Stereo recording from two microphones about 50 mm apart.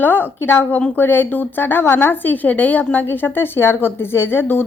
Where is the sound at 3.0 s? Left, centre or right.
Left.